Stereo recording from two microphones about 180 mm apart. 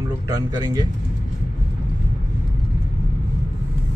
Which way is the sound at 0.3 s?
20° right (ahead or behind).